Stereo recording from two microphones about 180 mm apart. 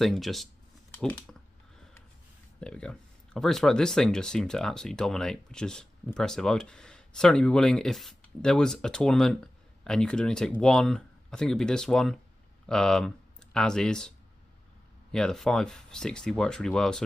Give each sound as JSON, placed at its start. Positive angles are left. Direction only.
{"t": 0.0, "sound": "speech", "side_deg": 0}
{"t": 2.6, "sound": "speech", "side_deg": 5}